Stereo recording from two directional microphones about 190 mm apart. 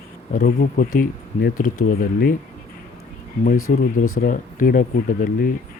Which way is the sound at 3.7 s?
45° left (ahead or behind).